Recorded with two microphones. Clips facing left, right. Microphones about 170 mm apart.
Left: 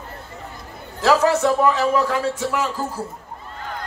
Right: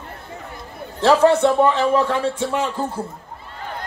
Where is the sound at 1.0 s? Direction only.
30° right (ahead or behind).